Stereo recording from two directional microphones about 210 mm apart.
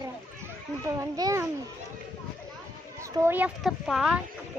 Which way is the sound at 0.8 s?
15° right (ahead or behind).